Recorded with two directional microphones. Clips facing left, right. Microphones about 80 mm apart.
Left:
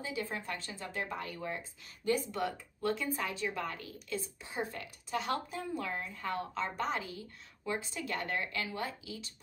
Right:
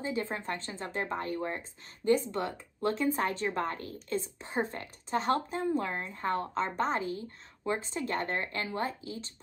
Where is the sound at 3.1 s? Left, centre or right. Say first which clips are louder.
Right 6 dB; right.